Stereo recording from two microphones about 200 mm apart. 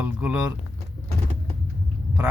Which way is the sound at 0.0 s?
5° right (ahead or behind).